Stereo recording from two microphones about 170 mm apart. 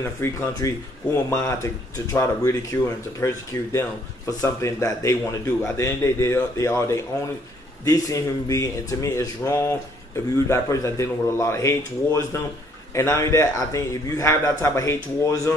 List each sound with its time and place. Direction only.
0.2 s a man's voice: 20° left (ahead or behind)